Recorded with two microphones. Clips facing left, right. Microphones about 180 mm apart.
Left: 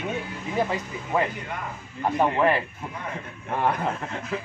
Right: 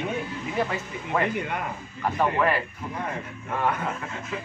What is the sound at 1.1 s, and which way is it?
Speech, 10° left (ahead or behind).